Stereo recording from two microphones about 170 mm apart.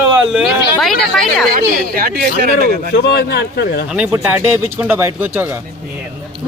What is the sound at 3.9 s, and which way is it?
Speech, 10° right (ahead or behind).